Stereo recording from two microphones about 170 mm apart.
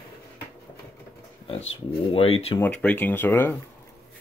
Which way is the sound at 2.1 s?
35° left (ahead or behind).